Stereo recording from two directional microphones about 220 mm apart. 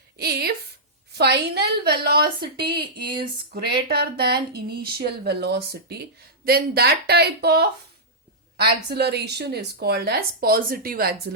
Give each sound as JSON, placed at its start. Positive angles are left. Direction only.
{"t": 0.2, "sound": "a woman's voice", "side_deg": -45}